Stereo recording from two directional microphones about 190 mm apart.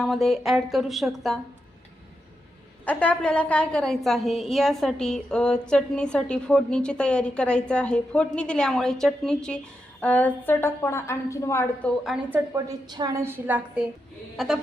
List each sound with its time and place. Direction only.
0.0 s a woman's voice: centre (ahead or behind)
2.8 s a woman's voice: 10° left (ahead or behind)
12.0 s a woman's voice: 5° right (ahead or behind)
12.5 s a woman's voice: 20° right (ahead or behind); by 14.6 s 5° right (ahead or behind)